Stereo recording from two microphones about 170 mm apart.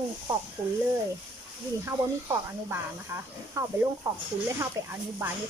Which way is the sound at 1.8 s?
15° right (ahead or behind).